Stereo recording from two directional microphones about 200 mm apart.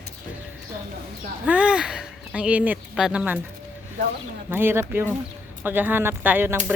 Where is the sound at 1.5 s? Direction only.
5° right (ahead or behind).